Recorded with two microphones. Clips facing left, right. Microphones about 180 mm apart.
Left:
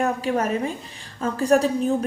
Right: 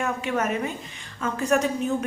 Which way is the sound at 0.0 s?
35° left (ahead or behind).